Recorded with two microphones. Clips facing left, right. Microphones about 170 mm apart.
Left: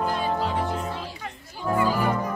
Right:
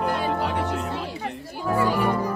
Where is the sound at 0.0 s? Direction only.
65° right (ahead or behind).